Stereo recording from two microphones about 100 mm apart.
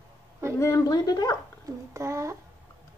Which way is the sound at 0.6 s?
30° left (ahead or behind).